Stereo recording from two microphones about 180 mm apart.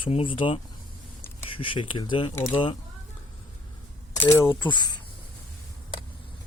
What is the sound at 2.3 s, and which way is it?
Speech, 10° left (ahead or behind).